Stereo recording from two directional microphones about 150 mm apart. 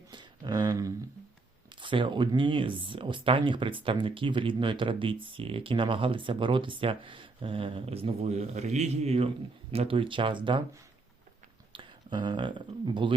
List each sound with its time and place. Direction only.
0.1 s a sound: 30° right (ahead or behind)
1.7 s speech: 35° right (ahead or behind)
11.7 s speech: 35° right (ahead or behind)